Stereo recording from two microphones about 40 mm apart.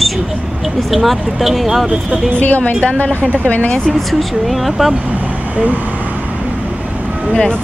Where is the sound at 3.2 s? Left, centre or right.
Right.